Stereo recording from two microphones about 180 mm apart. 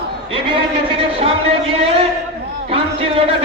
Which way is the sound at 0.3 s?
30° right (ahead or behind).